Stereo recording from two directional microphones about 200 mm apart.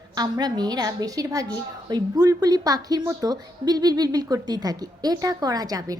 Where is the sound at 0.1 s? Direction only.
20° right (ahead or behind).